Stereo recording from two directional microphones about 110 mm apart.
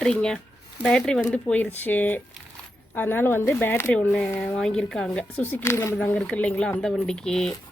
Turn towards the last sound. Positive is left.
turn(degrees=5)  # may be behind; listen again after turning